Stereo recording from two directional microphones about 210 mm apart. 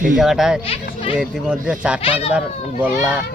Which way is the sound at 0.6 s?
25° left (ahead or behind).